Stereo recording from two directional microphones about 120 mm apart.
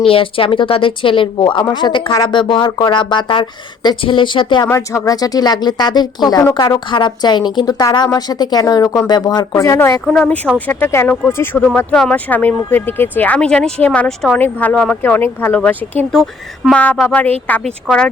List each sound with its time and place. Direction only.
0.0 s speech: 50° left (ahead or behind)
4.7 s speech: 25° left (ahead or behind)
10.1 s speech: 5° left (ahead or behind)
11.6 s speech: 10° left (ahead or behind)
16.1 s speech: centre (ahead or behind)